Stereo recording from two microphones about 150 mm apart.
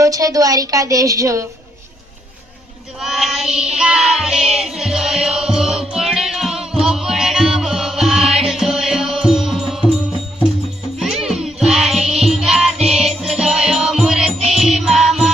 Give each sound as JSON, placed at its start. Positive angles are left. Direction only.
{"t": 0.0, "sound": "a woman's voice", "side_deg": -25}
{"t": 3.0, "sound": "child singing", "side_deg": 0}
{"t": 3.8, "sound": "music", "side_deg": -5}
{"t": 11.0, "sound": "music", "side_deg": 0}